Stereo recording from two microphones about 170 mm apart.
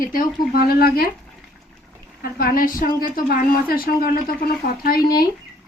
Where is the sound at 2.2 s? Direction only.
55° left (ahead or behind).